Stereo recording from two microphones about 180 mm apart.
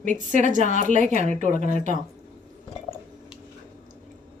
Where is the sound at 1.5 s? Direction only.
50° left (ahead or behind).